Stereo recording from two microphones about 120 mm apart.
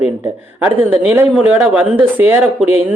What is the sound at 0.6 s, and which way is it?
Speech, 15° right (ahead or behind).